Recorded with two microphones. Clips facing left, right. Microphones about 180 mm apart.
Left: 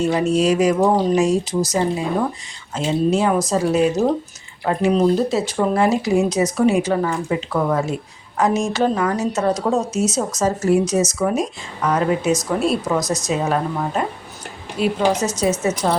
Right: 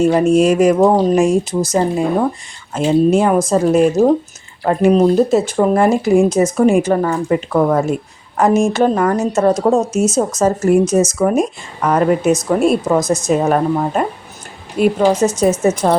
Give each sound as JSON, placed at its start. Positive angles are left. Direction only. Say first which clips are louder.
{"t": 0.0, "sound": "speech", "louder": "right 6 dB", "side_deg": -50}